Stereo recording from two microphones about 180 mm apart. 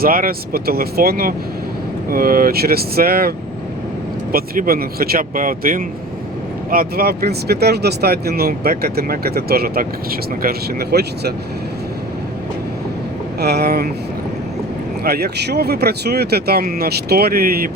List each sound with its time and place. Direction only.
0.0 s speech: 55° right (ahead or behind)
13.4 s speech: 60° right (ahead or behind)
15.0 s speech: 60° right (ahead or behind)